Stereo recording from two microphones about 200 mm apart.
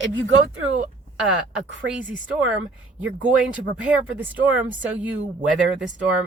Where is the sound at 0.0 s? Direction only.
70° right (ahead or behind).